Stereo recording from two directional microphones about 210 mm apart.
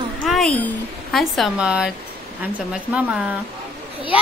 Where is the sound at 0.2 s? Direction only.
5° left (ahead or behind).